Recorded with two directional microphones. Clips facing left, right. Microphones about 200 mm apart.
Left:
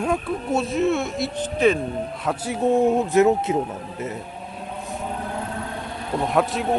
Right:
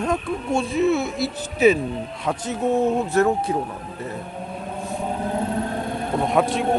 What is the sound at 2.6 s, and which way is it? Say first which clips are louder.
Speech: left 2 dB; 15° left (ahead or behind).